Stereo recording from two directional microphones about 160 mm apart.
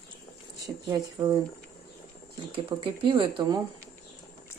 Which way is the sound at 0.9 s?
20° right (ahead or behind).